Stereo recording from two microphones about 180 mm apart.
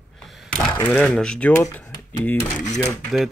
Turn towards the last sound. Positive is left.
turn(degrees=0)  # may be behind; listen again after turning